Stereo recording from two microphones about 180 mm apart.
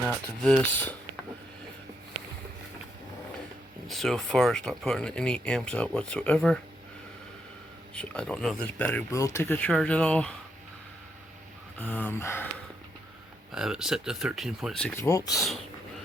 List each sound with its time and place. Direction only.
0.4 s speech: 5° left (ahead or behind)
3.8 s speech: centre (ahead or behind)
7.9 s speech: 5° left (ahead or behind)
11.8 s speech: 10° left (ahead or behind)
13.5 s speech: 5° right (ahead or behind)
14.9 s speech: 15° left (ahead or behind)
15.4 s speech: centre (ahead or behind)